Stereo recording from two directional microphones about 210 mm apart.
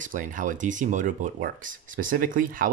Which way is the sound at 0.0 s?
40° right (ahead or behind).